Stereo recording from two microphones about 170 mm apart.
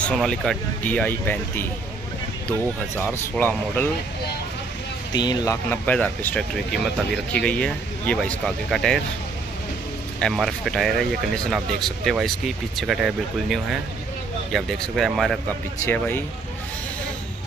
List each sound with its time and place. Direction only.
0.0 s speech: 5° left (ahead or behind)
3.0 s speech: 10° left (ahead or behind)
5.1 s speech: 25° left (ahead or behind)
5.9 s speech: 5° left (ahead or behind)
10.1 s speech: 5° left (ahead or behind)
15.8 s speech: 15° left (ahead or behind)